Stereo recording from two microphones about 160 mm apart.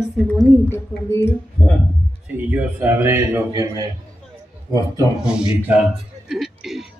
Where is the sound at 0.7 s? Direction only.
15° left (ahead or behind).